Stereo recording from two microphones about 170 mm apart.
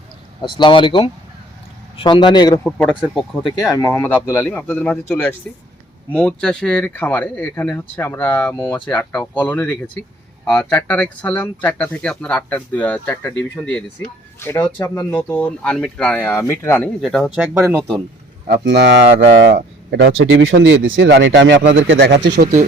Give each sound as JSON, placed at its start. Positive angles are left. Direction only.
{"t": 0.4, "sound": "speech", "side_deg": 30}
{"t": 2.6, "sound": "speech", "side_deg": 5}
{"t": 3.5, "sound": "speech", "side_deg": 20}
{"t": 17.0, "sound": "speech", "side_deg": 0}
{"t": 18.4, "sound": "speech", "side_deg": -80}